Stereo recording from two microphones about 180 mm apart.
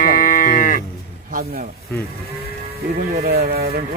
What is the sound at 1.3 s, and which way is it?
Speech, 50° right (ahead or behind).